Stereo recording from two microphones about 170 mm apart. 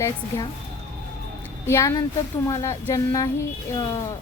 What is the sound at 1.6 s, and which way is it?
A woman's voice, 15° left (ahead or behind).